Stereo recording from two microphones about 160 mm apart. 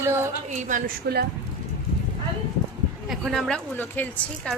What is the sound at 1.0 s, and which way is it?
Speech, 90° right.